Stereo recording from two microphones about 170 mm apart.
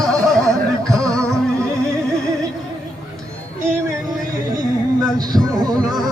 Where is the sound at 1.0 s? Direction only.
5° left (ahead or behind).